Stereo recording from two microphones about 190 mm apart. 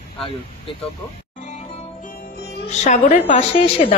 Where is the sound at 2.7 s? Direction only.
40° left (ahead or behind).